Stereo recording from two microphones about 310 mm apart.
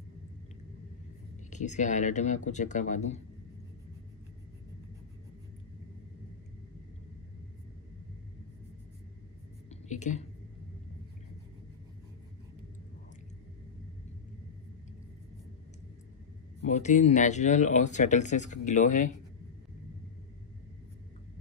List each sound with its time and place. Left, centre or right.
1.5 s speech: left
9.7 s whispering: left
16.6 s speech: left